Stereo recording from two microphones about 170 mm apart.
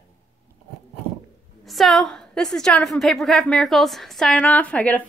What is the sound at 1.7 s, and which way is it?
A woman's voice, centre (ahead or behind).